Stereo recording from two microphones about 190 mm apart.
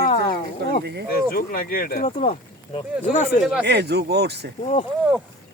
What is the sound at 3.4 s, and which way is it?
Speech, 5° right (ahead or behind).